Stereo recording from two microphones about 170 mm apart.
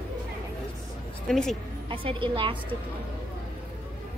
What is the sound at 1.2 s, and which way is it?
Speech, centre (ahead or behind).